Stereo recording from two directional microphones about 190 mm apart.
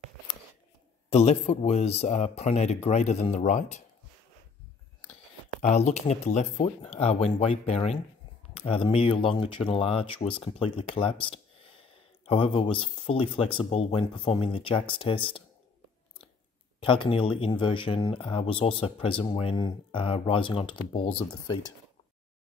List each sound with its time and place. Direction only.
1.1 s speech: 35° left (ahead or behind)
5.6 s speech: 35° left (ahead or behind)
11.2 s a sound: 30° left (ahead or behind)
13.0 s speech: 30° left (ahead or behind)
16.8 s speech: 25° left (ahead or behind)